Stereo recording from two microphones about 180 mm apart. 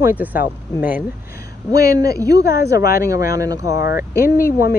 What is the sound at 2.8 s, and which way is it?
Speech, 55° left (ahead or behind).